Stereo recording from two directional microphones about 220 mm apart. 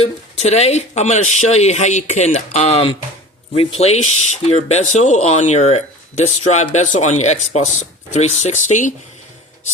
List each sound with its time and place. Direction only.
0.0 s speech: 30° left (ahead or behind)